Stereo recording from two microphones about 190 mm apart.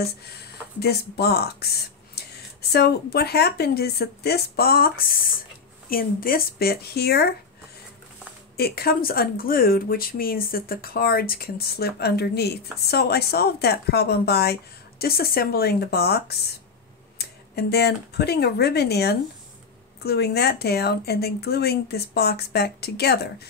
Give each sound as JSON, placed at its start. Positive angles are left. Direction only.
{"t": 0.7, "sound": "speech", "side_deg": 55}
{"t": 8.5, "sound": "speech", "side_deg": 55}